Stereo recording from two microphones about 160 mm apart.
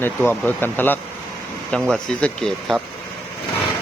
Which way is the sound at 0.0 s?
10° left (ahead or behind).